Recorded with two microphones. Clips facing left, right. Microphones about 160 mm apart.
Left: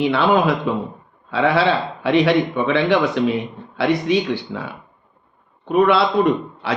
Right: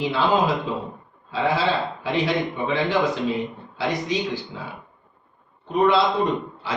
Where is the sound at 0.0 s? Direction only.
65° left (ahead or behind).